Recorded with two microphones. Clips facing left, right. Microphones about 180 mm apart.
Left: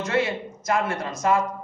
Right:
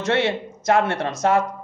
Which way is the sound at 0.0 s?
75° right (ahead or behind).